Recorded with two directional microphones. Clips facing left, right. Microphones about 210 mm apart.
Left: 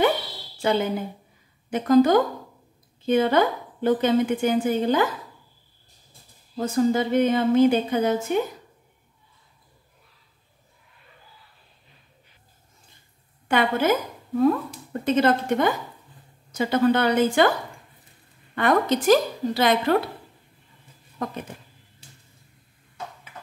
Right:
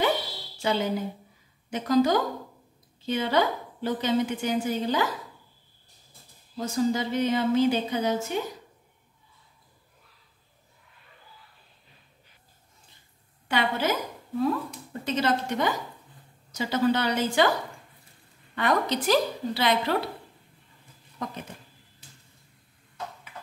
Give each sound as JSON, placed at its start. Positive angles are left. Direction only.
{"t": 0.6, "sound": "a woman's voice", "side_deg": 55}
{"t": 6.5, "sound": "a woman's voice", "side_deg": 55}
{"t": 13.5, "sound": "a woman's voice", "side_deg": 50}
{"t": 18.5, "sound": "a woman's voice", "side_deg": 50}
{"t": 21.2, "sound": "a woman's voice", "side_deg": 55}